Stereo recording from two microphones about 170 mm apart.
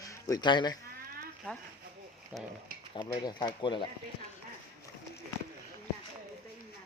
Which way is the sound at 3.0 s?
25° left (ahead or behind).